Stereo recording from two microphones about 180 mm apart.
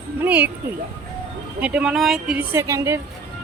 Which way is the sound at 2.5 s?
15° right (ahead or behind).